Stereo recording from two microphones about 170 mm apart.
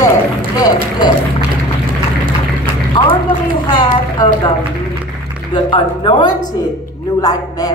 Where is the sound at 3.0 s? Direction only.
30° left (ahead or behind).